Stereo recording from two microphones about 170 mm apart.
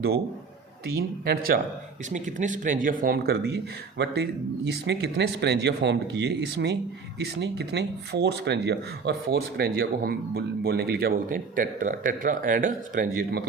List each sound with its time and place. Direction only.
1.2 s speech: 65° right (ahead or behind)
2.0 s speech: 45° right (ahead or behind); by 13.5 s 65° right (ahead or behind)